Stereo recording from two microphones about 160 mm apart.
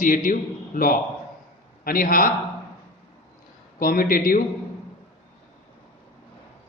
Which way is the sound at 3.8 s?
60° left (ahead or behind).